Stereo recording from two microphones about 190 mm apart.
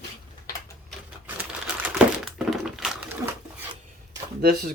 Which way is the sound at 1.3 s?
5° right (ahead or behind).